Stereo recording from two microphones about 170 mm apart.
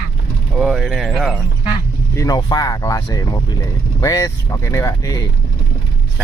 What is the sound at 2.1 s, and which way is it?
Speech, 20° left (ahead or behind).